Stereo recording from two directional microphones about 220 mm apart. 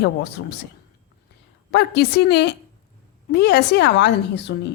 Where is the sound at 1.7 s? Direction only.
50° left (ahead or behind).